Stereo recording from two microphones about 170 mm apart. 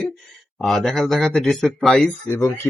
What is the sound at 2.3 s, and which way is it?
Speech, 15° left (ahead or behind).